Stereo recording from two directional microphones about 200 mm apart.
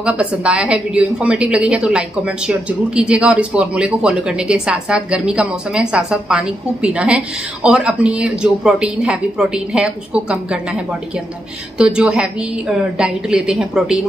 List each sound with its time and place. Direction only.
0.0 s a woman's voice: 5° right (ahead or behind)